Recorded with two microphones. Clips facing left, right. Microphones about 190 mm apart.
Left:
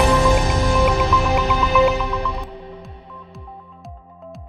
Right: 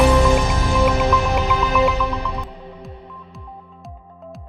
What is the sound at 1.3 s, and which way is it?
Music, centre (ahead or behind).